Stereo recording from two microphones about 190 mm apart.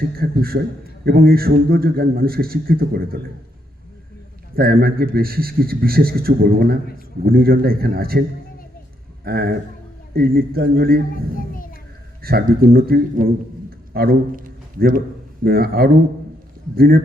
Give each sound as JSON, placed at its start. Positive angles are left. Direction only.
{"t": 0.2, "sound": "a man's voice", "side_deg": -55}
{"t": 4.5, "sound": "a man's voice", "side_deg": -55}
{"t": 9.2, "sound": "a man's voice", "side_deg": -55}
{"t": 11.3, "sound": "a child's voice", "side_deg": 45}
{"t": 12.2, "sound": "a man's voice", "side_deg": -50}